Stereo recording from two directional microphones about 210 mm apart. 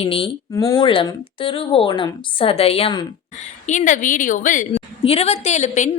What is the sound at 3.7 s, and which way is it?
A woman's voice, 35° left (ahead or behind).